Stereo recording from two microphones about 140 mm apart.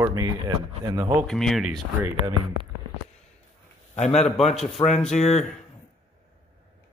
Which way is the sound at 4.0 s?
50° left (ahead or behind).